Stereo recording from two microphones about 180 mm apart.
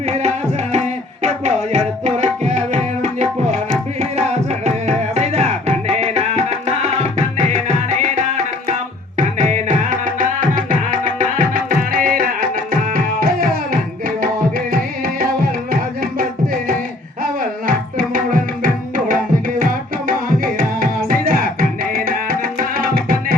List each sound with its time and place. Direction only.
0.0 s music: 40° right (ahead or behind)
17.4 s tabla: 50° right (ahead or behind)